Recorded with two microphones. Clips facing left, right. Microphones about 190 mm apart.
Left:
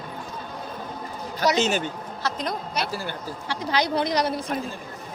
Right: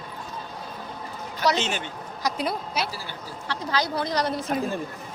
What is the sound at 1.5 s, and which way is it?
Speech, 40° left (ahead or behind).